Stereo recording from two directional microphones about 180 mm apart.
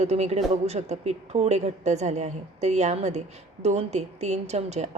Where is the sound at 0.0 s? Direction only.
40° right (ahead or behind).